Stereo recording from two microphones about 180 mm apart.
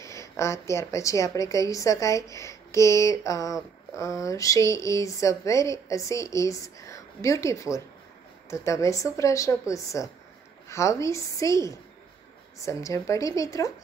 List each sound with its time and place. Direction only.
0.0 s a woman's voice: 15° left (ahead or behind)